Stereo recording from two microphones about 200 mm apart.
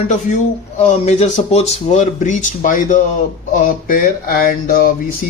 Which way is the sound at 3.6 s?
45° left (ahead or behind).